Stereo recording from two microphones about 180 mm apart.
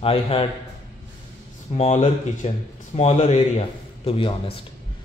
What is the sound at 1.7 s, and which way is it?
Speech, 35° left (ahead or behind).